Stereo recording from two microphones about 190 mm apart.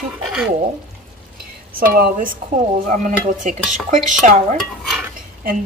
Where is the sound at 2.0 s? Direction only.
45° right (ahead or behind).